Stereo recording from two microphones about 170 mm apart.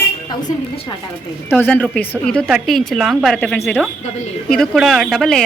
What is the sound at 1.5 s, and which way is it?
A woman's voice, 10° left (ahead or behind).